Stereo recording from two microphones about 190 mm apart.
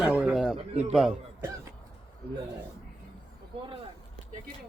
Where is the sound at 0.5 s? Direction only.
35° right (ahead or behind).